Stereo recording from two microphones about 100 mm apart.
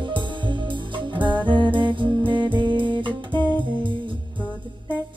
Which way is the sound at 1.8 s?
55° right (ahead or behind).